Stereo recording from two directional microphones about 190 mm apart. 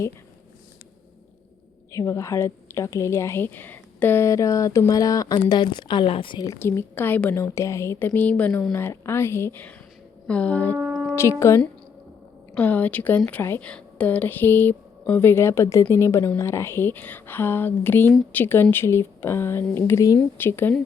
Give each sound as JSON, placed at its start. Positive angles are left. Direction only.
{"t": 2.0, "sound": "a woman's voice", "side_deg": 15}
{"t": 10.8, "sound": "a sound", "side_deg": -10}
{"t": 11.1, "sound": "a woman's voice", "side_deg": 15}